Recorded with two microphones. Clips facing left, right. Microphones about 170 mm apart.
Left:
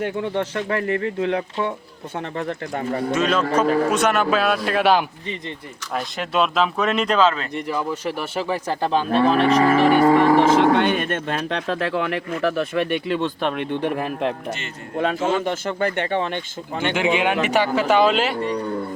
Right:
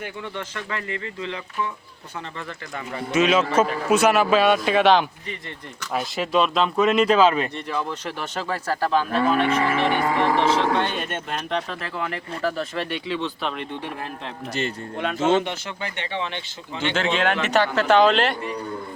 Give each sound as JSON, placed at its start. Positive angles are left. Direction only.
{"t": 0.0, "sound": "speech", "side_deg": 75}
{"t": 3.2, "sound": "speech", "side_deg": -5}
{"t": 7.5, "sound": "speech", "side_deg": 10}
{"t": 12.4, "sound": "speech", "side_deg": 65}
{"t": 14.9, "sound": "speech", "side_deg": 35}
{"t": 15.2, "sound": "speech", "side_deg": -25}
{"t": 15.4, "sound": "speech", "side_deg": 50}
{"t": 16.9, "sound": "speech", "side_deg": 15}